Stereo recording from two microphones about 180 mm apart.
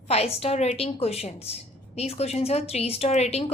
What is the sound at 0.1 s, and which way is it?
A woman's voice, 35° left (ahead or behind).